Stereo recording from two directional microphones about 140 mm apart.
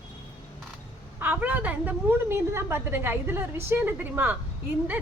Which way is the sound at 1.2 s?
10° right (ahead or behind).